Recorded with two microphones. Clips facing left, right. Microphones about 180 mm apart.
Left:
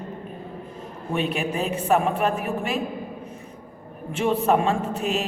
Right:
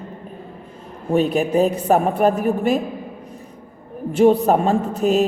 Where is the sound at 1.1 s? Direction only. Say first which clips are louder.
Right 9 dB; 40° right (ahead or behind).